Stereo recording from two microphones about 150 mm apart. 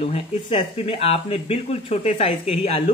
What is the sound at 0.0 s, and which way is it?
Speech, 40° left (ahead or behind).